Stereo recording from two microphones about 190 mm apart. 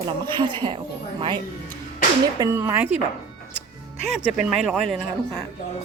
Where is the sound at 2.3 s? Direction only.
15° right (ahead or behind).